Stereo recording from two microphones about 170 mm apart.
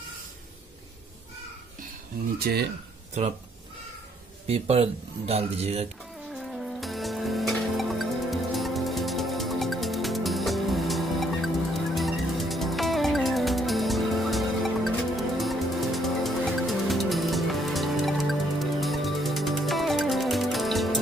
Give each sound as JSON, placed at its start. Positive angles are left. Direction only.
{"t": 2.3, "sound": "speech", "side_deg": -60}
{"t": 4.5, "sound": "speech", "side_deg": -35}
{"t": 6.3, "sound": "music", "side_deg": 0}